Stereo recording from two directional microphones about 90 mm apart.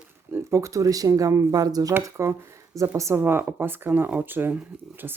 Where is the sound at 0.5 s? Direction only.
35° right (ahead or behind).